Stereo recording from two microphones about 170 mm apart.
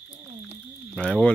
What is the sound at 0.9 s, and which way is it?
Speech, 5° left (ahead or behind).